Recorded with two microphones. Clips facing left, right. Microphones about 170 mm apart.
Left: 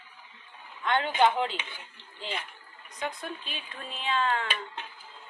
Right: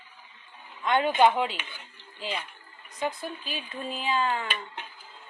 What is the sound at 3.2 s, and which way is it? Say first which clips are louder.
Speech: right 3 dB; 5° right (ahead or behind).